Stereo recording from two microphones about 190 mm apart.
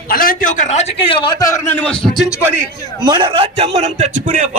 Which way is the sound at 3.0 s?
25° right (ahead or behind).